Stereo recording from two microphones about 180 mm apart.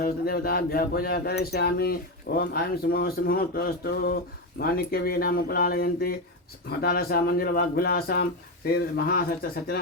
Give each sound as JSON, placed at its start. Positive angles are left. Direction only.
{"t": 0.0, "sound": "speech", "side_deg": 55}